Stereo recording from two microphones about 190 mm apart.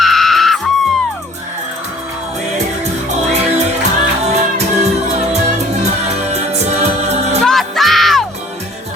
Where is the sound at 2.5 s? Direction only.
40° right (ahead or behind).